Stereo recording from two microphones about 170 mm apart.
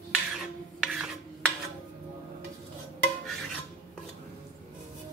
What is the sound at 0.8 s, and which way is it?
Filing, 5° right (ahead or behind).